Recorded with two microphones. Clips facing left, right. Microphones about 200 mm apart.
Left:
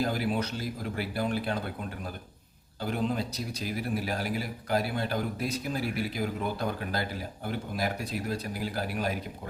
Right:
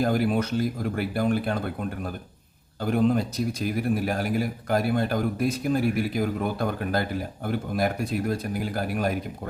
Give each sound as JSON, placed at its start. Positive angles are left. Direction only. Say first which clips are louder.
{"t": 0.0, "sound": "a man's voice", "louder": "right 6 dB", "side_deg": -50}
{"t": 2.8, "sound": "a man's voice", "louder": "right 7 dB", "side_deg": -50}